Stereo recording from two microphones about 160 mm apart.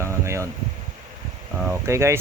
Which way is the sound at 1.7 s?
15° right (ahead or behind).